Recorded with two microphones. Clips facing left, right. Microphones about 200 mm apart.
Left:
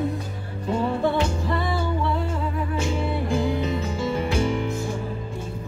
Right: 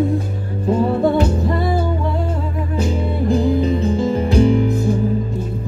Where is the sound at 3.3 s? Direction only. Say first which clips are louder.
Right 10 dB; 35° right (ahead or behind).